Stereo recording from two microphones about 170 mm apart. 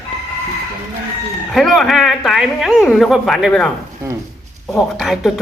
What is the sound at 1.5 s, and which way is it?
A man's voice, centre (ahead or behind).